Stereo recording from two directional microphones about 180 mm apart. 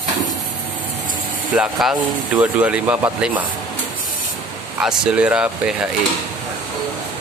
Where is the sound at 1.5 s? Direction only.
5° right (ahead or behind).